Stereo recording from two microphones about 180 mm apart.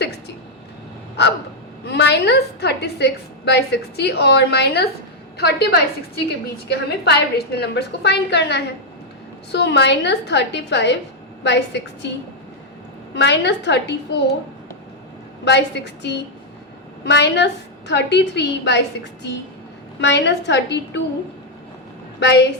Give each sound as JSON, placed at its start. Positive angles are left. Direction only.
{"t": 1.2, "sound": "dog", "side_deg": 65}
{"t": 1.8, "sound": "a woman's voice", "side_deg": 65}
{"t": 13.1, "sound": "a woman's voice", "side_deg": 75}
{"t": 15.4, "sound": "a woman's voice", "side_deg": 75}
{"t": 20.0, "sound": "a woman's voice", "side_deg": 75}
{"t": 22.2, "sound": "a woman's voice", "side_deg": 75}